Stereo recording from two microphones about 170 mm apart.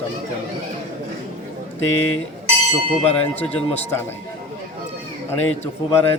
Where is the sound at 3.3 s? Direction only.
10° left (ahead or behind).